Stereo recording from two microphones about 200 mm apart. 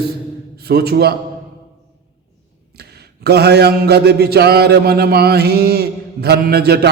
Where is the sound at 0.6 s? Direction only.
50° right (ahead or behind).